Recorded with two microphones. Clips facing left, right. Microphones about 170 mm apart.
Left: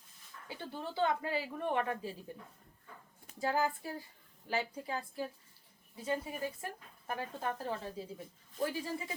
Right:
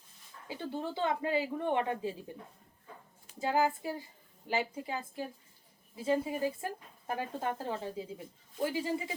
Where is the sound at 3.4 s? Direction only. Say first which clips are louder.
Right 3 dB; 20° right (ahead or behind).